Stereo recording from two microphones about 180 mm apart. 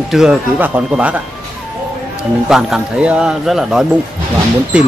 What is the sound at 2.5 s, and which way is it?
Speech, centre (ahead or behind).